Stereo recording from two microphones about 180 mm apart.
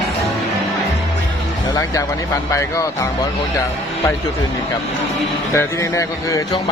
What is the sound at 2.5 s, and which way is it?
Speech, 15° left (ahead or behind).